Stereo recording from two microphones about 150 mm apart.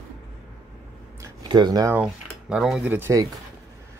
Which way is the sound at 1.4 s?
30° right (ahead or behind).